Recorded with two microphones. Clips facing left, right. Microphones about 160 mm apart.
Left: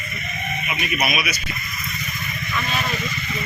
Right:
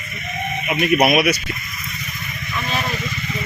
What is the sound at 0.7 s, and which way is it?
Speech, 55° right (ahead or behind).